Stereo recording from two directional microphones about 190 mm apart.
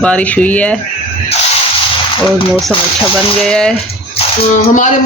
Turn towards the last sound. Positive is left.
turn(degrees=40)  # may be behind; listen again after turning